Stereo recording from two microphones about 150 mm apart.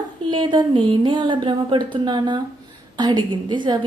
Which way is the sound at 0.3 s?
30° right (ahead or behind).